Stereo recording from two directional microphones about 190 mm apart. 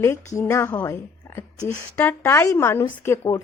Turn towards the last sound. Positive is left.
turn(degrees=15)  # may be behind; listen again after turning